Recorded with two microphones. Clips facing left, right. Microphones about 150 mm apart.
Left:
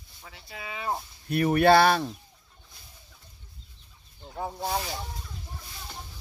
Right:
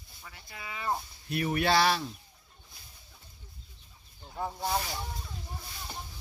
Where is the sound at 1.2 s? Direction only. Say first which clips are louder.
Left 8 dB; 50° left (ahead or behind).